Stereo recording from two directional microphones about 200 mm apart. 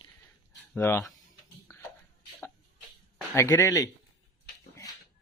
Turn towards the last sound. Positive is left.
turn(degrees=15)  # may be behind; listen again after turning